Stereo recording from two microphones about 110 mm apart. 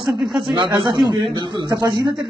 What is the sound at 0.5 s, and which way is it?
A man's voice, 50° right (ahead or behind).